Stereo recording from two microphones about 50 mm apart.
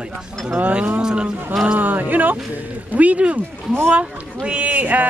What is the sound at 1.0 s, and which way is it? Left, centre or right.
Speech, centre.